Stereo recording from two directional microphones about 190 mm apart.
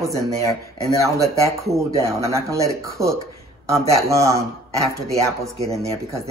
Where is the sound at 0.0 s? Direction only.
15° right (ahead or behind).